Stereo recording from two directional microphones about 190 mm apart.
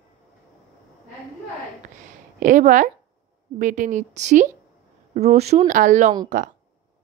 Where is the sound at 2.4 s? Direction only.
45° right (ahead or behind).